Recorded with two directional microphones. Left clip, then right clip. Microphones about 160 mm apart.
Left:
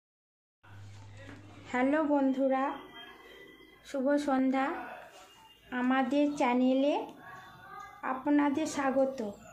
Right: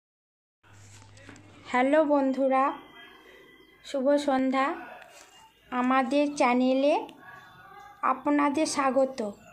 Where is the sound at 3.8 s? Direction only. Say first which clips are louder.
Right 5 dB; 10° right (ahead or behind).